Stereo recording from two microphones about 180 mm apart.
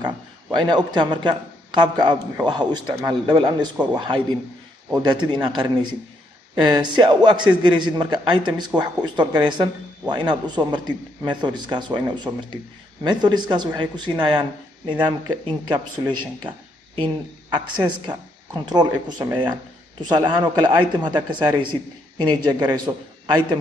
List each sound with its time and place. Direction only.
0.6 s speech: 25° right (ahead or behind)